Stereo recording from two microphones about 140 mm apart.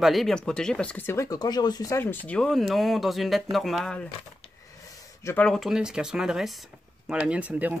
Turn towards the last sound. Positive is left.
turn(degrees=-10)  # may be behind; listen again after turning